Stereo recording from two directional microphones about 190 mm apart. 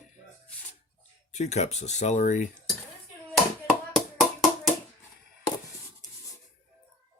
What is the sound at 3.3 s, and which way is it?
Hands, centre (ahead or behind).